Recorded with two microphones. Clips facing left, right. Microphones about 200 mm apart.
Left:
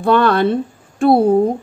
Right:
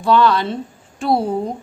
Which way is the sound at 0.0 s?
55° left (ahead or behind).